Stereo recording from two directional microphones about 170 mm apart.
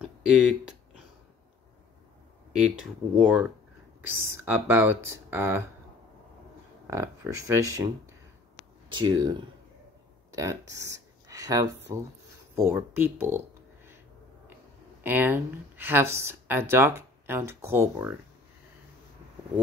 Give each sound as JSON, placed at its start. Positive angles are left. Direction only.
{"t": 0.0, "sound": "a sound", "side_deg": -5}
{"t": 2.5, "sound": "speech", "side_deg": -5}
{"t": 6.9, "sound": "speech", "side_deg": -20}
{"t": 8.9, "sound": "speech", "side_deg": -25}
{"t": 15.0, "sound": "speech", "side_deg": -10}